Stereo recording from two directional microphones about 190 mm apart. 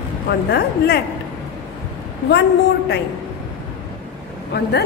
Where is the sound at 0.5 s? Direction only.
55° left (ahead or behind).